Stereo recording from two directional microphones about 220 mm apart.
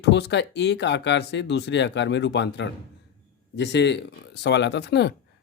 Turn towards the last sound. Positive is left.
turn(degrees=50)  # may be behind; listen again after turning